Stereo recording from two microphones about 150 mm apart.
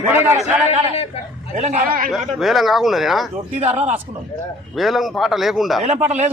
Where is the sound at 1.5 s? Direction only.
45° right (ahead or behind).